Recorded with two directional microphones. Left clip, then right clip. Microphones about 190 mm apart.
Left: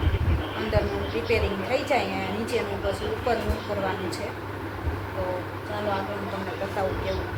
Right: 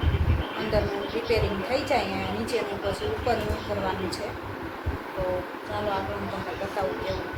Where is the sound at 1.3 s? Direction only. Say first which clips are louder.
Left 1 dB; 10° right (ahead or behind).